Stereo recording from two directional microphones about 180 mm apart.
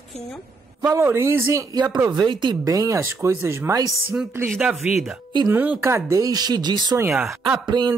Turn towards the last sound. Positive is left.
turn(degrees=-25)  # may be behind; listen again after turning